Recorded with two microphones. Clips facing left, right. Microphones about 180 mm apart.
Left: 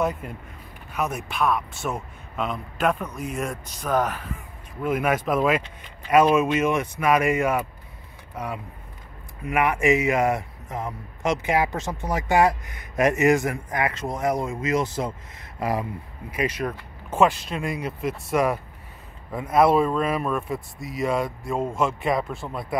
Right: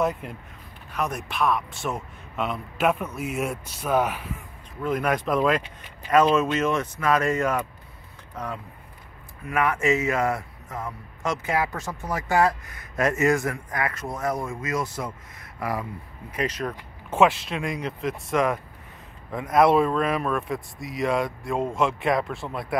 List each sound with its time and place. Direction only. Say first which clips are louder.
0.0 s a man's voice: even; centre (ahead or behind)
4.8 s a man's voice: left 1 dB; 5° left (ahead or behind)
16.3 s speech: left 2 dB; 10° left (ahead or behind)
17.1 s a man's voice: even; centre (ahead or behind)